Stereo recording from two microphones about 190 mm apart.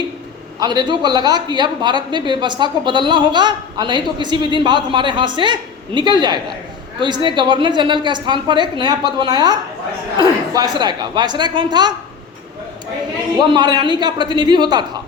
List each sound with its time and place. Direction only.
0.6 s a woman's voice: 20° right (ahead or behind)
13.5 s a woman's voice: 25° right (ahead or behind)